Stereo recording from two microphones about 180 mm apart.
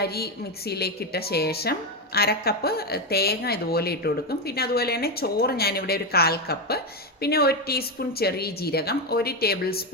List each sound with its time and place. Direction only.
0.0 s speech: 60° left (ahead or behind)